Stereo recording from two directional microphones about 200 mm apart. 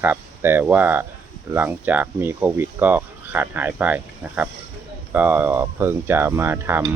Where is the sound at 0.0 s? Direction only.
10° right (ahead or behind).